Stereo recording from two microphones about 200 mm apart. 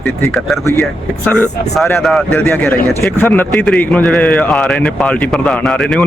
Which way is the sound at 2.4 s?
10° left (ahead or behind).